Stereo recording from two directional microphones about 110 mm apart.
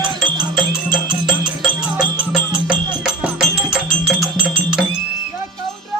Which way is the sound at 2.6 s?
5° right (ahead or behind).